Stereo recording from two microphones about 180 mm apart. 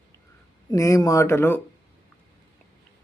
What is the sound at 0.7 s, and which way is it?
Speech, 20° left (ahead or behind).